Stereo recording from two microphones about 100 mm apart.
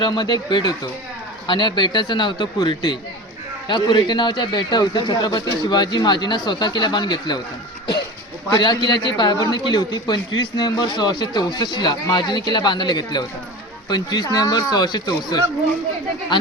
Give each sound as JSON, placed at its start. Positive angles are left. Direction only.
{"t": 0.0, "sound": "a man's voice", "side_deg": 50}
{"t": 8.5, "sound": "a man's voice", "side_deg": 45}